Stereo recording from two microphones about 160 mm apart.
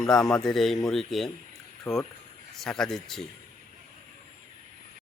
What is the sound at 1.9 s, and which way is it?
Speech, 20° left (ahead or behind).